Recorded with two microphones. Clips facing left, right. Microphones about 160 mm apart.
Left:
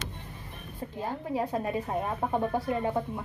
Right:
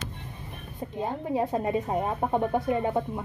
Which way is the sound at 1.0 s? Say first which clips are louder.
Right 4 dB; 20° right (ahead or behind).